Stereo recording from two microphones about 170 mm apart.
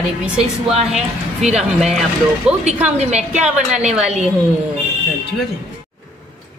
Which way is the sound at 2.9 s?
40° right (ahead or behind).